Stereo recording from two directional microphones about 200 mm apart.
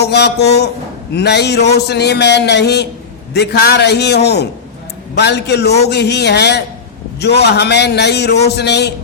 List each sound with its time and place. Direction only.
0.0 s a man's voice: 55° left (ahead or behind)